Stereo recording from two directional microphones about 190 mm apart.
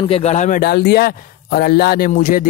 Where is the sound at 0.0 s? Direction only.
30° left (ahead or behind).